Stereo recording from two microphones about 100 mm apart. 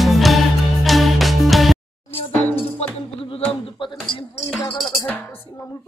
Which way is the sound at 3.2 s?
70° left (ahead or behind).